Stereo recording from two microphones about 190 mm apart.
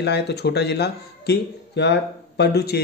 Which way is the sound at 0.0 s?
60° left (ahead or behind).